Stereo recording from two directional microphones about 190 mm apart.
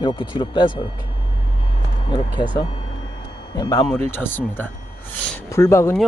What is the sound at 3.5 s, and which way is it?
Speech, 25° left (ahead or behind).